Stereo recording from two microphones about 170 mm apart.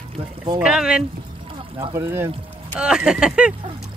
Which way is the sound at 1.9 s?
15° right (ahead or behind).